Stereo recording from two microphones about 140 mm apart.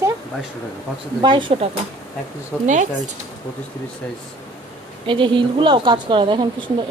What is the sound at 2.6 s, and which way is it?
Speech, 60° right (ahead or behind).